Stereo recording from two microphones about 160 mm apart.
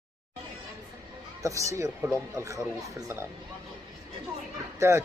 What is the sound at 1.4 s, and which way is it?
Speech, 20° right (ahead or behind).